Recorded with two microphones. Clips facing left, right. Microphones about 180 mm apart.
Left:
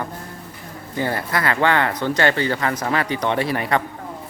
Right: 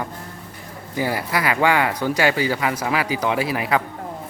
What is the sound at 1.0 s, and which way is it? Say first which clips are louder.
Speech: even; 10° right (ahead or behind).